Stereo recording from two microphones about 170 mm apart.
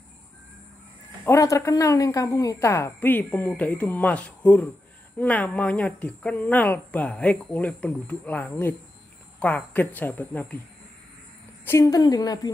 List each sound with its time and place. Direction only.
1.2 s speech: 20° left (ahead or behind)
11.6 s a woman's voice: 15° left (ahead or behind)